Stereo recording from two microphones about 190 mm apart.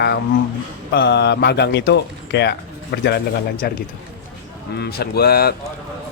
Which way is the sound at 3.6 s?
55° left (ahead or behind).